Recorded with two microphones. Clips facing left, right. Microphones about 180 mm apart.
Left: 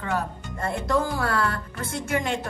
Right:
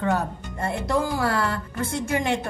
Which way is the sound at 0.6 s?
20° right (ahead or behind).